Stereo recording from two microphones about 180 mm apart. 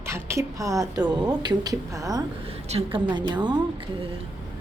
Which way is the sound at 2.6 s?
30° right (ahead or behind).